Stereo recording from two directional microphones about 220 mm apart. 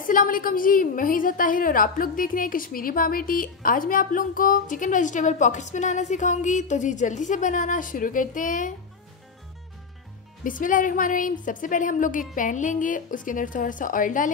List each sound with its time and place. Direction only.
0.0 s a woman's voice: 40° left (ahead or behind)
10.4 s a woman's voice: 35° left (ahead or behind)